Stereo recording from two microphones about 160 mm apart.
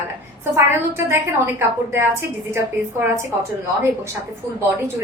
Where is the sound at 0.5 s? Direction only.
15° right (ahead or behind).